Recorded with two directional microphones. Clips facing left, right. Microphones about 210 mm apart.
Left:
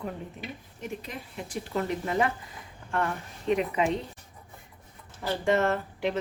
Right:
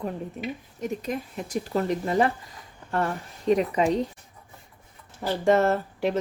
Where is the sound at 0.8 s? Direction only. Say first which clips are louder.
Right 8 dB; 40° right (ahead or behind).